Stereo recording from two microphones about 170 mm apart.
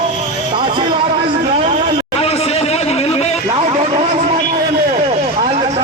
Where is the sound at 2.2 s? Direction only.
35° left (ahead or behind).